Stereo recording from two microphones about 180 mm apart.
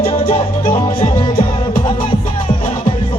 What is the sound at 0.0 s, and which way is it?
Music, 30° left (ahead or behind).